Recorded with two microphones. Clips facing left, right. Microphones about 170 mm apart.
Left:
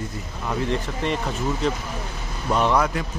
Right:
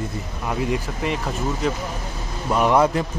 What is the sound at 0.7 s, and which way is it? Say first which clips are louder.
Speech: even; 5° right (ahead or behind).